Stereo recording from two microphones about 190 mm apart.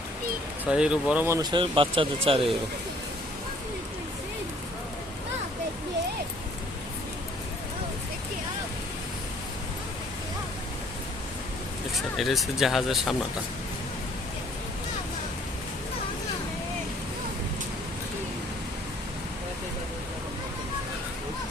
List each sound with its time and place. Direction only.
0.6 s speech: 5° right (ahead or behind); by 2.4 s 30° right (ahead or behind)
11.9 s speech: centre (ahead or behind)